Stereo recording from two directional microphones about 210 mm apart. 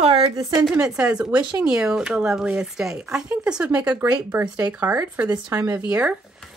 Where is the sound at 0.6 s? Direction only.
5° right (ahead or behind).